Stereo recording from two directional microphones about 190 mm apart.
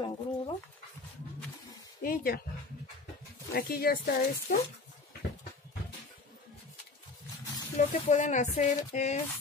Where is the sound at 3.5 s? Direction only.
55° left (ahead or behind).